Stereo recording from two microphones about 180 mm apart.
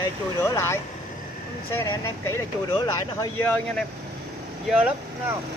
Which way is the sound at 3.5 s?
5° left (ahead or behind).